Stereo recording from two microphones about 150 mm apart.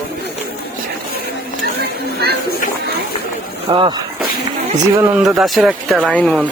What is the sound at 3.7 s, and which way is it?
Speech, 35° right (ahead or behind).